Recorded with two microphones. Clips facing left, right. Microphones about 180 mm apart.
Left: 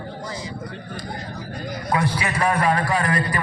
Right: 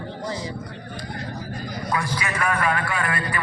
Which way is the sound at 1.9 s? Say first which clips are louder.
Left 4 dB; 30° left (ahead or behind).